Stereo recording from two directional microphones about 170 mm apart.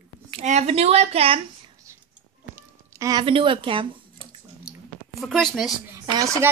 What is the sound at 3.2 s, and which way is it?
Speech, 30° right (ahead or behind).